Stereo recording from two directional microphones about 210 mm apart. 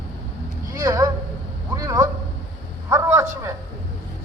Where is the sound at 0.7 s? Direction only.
15° right (ahead or behind).